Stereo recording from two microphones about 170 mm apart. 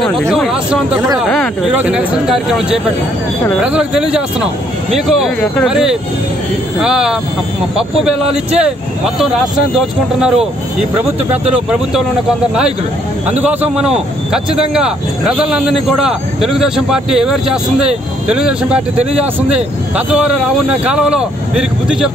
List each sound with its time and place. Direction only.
0.0 s a sound: centre (ahead or behind)
1.1 s a man's voice: centre (ahead or behind)
9.8 s a man's voice: 5° right (ahead or behind)
13.3 s a man's voice: 10° right (ahead or behind)
20.8 s a man's voice: 5° right (ahead or behind)